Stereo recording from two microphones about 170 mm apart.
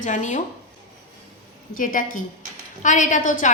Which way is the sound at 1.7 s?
55° left (ahead or behind).